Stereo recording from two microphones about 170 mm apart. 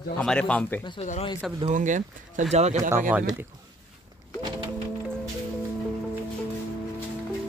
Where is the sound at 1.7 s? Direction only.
50° right (ahead or behind).